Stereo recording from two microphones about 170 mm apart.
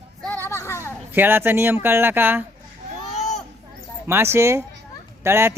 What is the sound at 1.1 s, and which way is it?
Speech, 10° right (ahead or behind).